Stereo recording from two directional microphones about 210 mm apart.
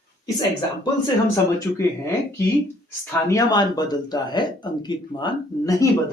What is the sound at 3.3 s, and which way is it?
Speech, 20° left (ahead or behind).